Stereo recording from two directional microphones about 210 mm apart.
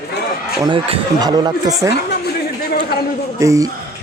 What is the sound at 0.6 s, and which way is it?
Speech, 20° right (ahead or behind).